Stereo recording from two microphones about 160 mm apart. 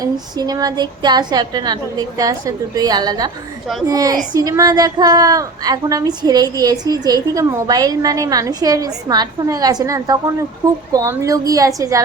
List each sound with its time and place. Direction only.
0.0 s a woman's voice: 25° right (ahead or behind)